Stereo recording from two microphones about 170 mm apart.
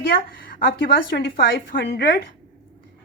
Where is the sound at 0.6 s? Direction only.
80° left.